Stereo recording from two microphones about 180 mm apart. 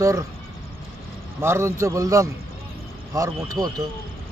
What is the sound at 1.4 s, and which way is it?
Speech, 15° right (ahead or behind).